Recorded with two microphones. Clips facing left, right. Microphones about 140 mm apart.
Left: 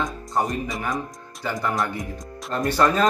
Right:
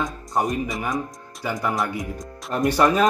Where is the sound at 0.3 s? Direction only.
10° right (ahead or behind).